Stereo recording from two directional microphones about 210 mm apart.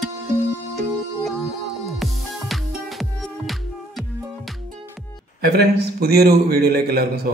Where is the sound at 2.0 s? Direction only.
Centre (ahead or behind).